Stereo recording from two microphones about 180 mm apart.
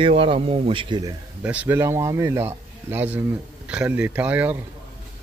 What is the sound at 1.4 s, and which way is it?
A man's voice, 5° right (ahead or behind).